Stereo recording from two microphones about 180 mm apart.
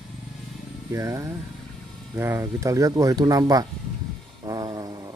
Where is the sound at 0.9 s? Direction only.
15° right (ahead or behind).